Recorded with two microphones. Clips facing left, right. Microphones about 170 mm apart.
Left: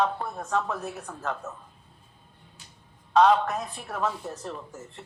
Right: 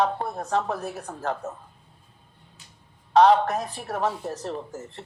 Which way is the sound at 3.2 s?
35° right (ahead or behind).